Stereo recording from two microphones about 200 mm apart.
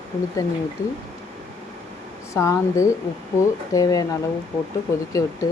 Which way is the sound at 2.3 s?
15° left (ahead or behind).